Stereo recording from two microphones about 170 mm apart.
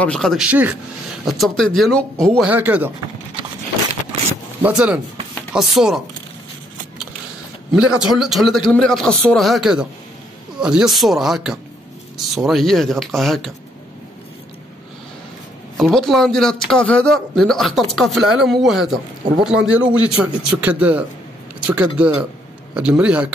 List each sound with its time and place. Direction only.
0.0 s a man's voice: 5° left (ahead or behind)
0.5 s a man's voice: 10° right (ahead or behind)
2.5 s a man's voice: 10° right (ahead or behind)
4.6 s a man's voice: 5° right (ahead or behind)
7.7 s a man's voice: 5° right (ahead or behind)
15.8 s a man's voice: centre (ahead or behind)